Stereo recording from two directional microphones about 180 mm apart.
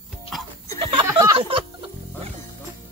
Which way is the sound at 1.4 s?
30° right (ahead or behind).